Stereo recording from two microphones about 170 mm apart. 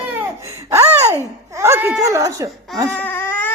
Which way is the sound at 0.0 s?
10° right (ahead or behind).